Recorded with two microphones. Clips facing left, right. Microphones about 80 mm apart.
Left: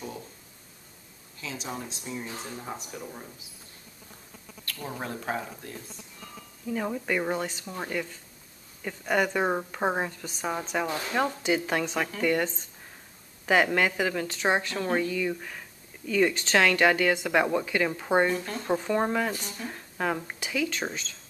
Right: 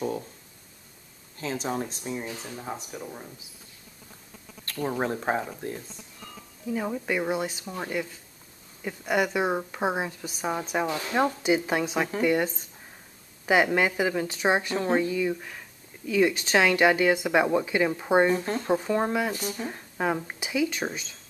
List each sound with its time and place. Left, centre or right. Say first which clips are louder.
1.4 s speech: right 6 dB; right
2.5 s speech: right 2 dB; centre
4.6 s speech: right 7 dB; right
6.7 s speech: right 1 dB; centre
18.3 s speech: right 5 dB; right
18.6 s speech: right 1 dB; centre
19.3 s speech: right 4 dB; centre